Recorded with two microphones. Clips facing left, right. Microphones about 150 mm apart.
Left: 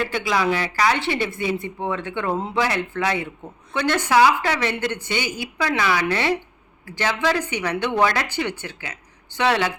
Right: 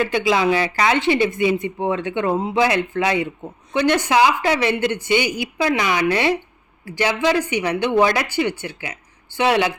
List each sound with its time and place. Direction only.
0.1 s speech: 20° right (ahead or behind)